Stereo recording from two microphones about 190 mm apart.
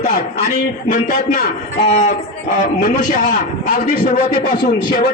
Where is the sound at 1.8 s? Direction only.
35° left (ahead or behind).